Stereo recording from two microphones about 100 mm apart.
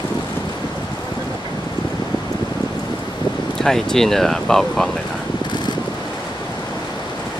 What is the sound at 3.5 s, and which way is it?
Speech, 5° left (ahead or behind).